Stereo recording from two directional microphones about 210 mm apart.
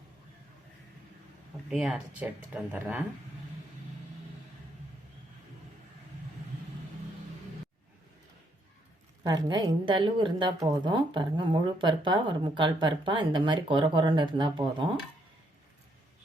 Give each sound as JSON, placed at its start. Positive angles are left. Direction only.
{"t": 1.7, "sound": "speech", "side_deg": -5}
{"t": 9.2, "sound": "a woman's voice", "side_deg": -20}